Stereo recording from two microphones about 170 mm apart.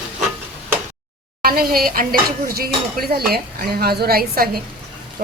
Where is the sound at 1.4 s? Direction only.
60° right (ahead or behind).